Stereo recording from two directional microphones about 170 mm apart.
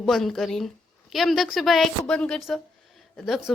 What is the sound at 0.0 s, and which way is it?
A woman's voice, centre (ahead or behind).